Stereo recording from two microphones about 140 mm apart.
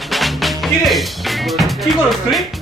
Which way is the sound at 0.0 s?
Centre (ahead or behind).